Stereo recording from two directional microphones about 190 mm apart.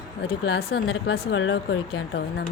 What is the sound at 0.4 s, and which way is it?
Speech, 60° left (ahead or behind).